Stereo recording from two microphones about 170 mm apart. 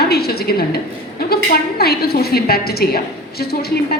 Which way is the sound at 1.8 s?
65° left (ahead or behind).